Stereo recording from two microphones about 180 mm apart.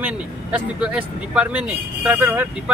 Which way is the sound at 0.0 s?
5° right (ahead or behind).